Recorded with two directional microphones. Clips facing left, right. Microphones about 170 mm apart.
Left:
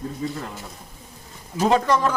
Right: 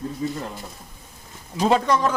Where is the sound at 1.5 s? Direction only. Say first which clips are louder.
Even; 5° left (ahead or behind).